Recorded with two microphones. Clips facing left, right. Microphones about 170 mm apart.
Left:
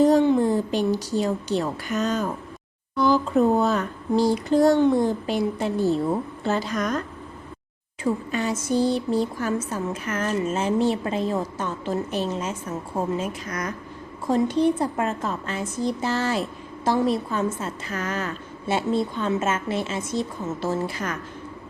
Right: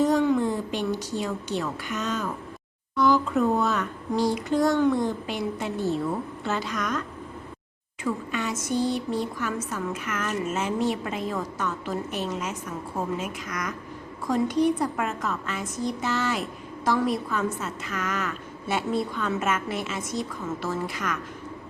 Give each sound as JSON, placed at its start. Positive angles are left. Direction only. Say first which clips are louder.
{"t": 0.0, "sound": "a woman's voice", "louder": "left 4 dB", "side_deg": 30}
{"t": 8.0, "sound": "a woman's voice", "louder": "left 4 dB", "side_deg": 35}